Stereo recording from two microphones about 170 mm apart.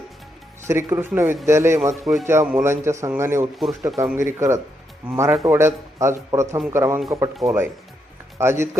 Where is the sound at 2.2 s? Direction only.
15° right (ahead or behind).